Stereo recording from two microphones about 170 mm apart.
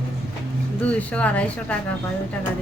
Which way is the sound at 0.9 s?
10° left (ahead or behind).